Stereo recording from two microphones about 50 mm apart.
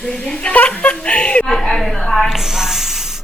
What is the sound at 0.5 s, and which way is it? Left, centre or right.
Speech, left.